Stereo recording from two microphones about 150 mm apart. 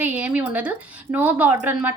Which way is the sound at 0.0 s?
10° right (ahead or behind).